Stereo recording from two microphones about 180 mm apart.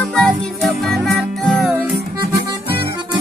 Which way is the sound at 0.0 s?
Centre (ahead or behind).